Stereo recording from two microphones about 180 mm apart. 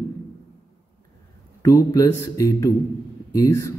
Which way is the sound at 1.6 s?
20° left (ahead or behind).